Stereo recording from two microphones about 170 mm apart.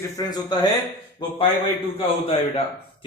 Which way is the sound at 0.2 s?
20° left (ahead or behind).